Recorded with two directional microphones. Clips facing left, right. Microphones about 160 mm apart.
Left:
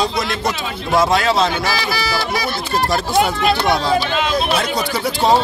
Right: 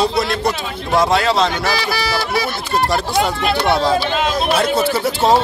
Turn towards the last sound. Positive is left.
turn(degrees=-5)  # may be behind; listen again after turning